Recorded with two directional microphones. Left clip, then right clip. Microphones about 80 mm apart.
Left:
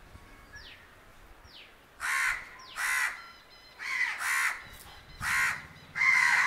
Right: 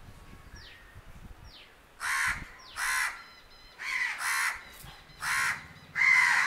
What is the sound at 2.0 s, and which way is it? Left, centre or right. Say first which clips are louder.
Crow: even; centre.